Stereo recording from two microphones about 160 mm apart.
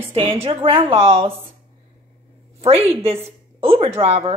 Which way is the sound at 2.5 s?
40° right (ahead or behind).